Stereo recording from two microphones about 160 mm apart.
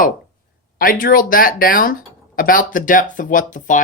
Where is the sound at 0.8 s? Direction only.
60° left (ahead or behind).